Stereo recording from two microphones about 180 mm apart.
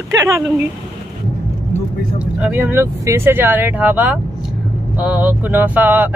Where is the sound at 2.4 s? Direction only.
10° right (ahead or behind).